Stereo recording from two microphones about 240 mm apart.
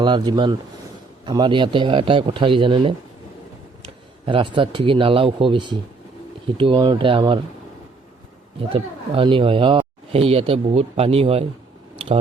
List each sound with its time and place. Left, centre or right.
0.0 s speech: centre
8.7 s speech: right